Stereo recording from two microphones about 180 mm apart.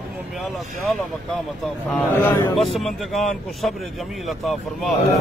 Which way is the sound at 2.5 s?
Centre (ahead or behind).